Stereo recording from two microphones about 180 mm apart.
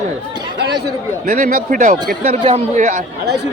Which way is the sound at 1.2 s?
50° right (ahead or behind).